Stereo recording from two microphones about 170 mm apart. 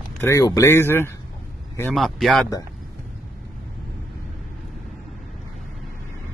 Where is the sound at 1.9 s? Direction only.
Centre (ahead or behind).